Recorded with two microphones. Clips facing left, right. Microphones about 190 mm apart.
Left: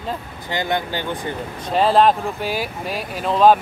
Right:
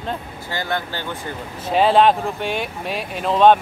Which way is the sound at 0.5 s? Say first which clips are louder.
Left 3 dB; 15° left (ahead or behind).